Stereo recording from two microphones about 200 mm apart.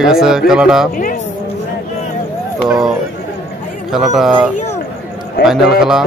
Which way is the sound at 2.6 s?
Centre (ahead or behind).